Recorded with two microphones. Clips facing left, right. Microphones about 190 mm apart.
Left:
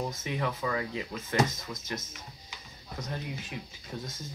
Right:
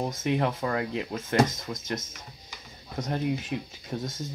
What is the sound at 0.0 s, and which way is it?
Speech, 55° right (ahead or behind).